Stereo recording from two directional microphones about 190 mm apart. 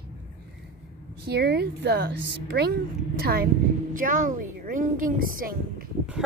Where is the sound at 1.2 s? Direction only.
60° right (ahead or behind).